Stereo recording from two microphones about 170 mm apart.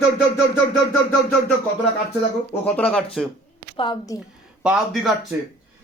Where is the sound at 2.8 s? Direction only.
5° left (ahead or behind).